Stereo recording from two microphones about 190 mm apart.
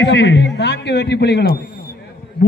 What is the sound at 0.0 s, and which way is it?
A man's voice, 60° left (ahead or behind).